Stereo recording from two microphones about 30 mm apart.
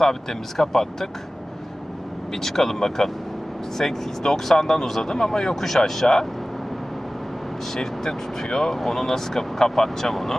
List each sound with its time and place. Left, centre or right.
0.0 s speech: centre
2.4 s speech: centre
7.7 s speech: centre